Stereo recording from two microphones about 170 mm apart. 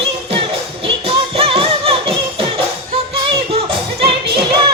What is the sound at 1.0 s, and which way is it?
Music, 35° right (ahead or behind).